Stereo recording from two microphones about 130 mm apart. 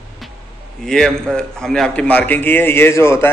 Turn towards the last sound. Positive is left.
turn(degrees=20)  # may be behind; listen again after turning